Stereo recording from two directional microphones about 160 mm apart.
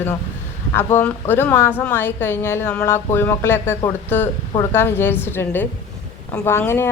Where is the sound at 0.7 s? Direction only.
15° left (ahead or behind).